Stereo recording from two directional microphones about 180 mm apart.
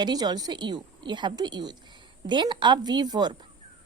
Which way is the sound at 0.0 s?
25° right (ahead or behind).